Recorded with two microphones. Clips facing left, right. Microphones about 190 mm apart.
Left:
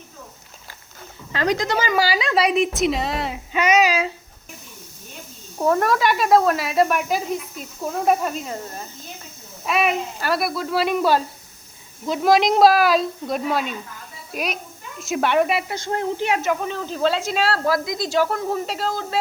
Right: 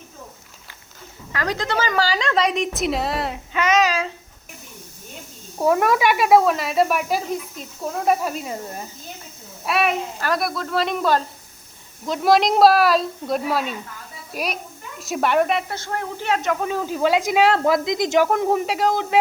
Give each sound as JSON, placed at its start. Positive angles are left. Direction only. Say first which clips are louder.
{"t": 1.3, "sound": "speech", "louder": "left 4 dB", "side_deg": 25}
{"t": 1.5, "sound": "child singing", "louder": "left 1 dB", "side_deg": 15}
{"t": 1.9, "sound": "speech", "louder": "left 1 dB", "side_deg": 10}
{"t": 3.5, "sound": "child singing", "louder": "left 1 dB", "side_deg": 10}
{"t": 5.5, "sound": "speech", "louder": "right 1 dB", "side_deg": -10}
{"t": 9.6, "sound": "speech", "louder": "even", "side_deg": 0}
{"t": 16.3, "sound": "speech", "louder": "right 1 dB", "side_deg": 5}